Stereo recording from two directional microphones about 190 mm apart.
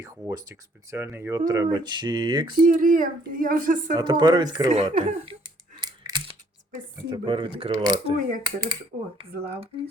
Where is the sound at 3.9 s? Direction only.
25° right (ahead or behind).